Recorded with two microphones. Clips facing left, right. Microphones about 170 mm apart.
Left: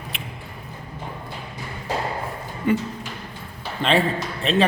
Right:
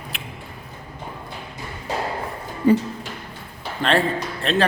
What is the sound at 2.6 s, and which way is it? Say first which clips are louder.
Speech: right 5 dB; 35° right (ahead or behind).